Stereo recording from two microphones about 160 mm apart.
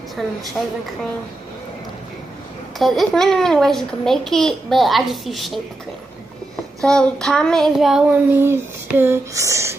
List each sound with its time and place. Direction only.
0.2 s a child's voice: centre (ahead or behind)
2.8 s a child's voice: centre (ahead or behind)
6.8 s a child's voice: 5° left (ahead or behind)
8.3 s a sound: 15° right (ahead or behind)